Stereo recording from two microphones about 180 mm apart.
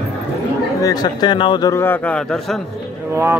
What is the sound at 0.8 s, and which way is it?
Speech, 25° left (ahead or behind).